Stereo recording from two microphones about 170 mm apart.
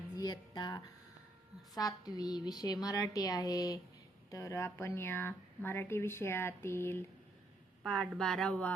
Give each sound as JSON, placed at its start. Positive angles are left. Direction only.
{"t": 0.2, "sound": "a woman's voice", "side_deg": 25}
{"t": 7.9, "sound": "speech", "side_deg": 0}